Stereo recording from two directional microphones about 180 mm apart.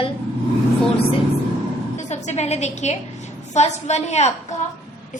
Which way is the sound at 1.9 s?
40° left (ahead or behind).